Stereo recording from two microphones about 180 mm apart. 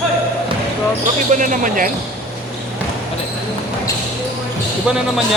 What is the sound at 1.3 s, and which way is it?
Basketball bounce, 45° right (ahead or behind).